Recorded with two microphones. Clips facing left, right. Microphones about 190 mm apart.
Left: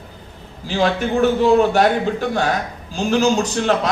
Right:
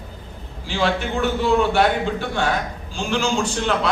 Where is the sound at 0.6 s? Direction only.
40° left (ahead or behind).